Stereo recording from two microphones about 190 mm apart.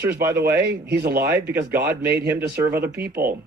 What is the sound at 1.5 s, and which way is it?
Speech, 10° right (ahead or behind).